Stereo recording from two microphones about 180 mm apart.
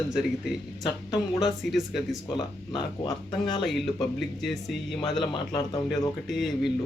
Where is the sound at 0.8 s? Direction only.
20° left (ahead or behind).